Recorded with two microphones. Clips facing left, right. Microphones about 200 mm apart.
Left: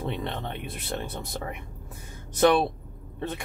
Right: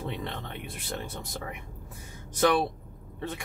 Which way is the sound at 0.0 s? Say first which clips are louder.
Left 4 dB; 25° left (ahead or behind).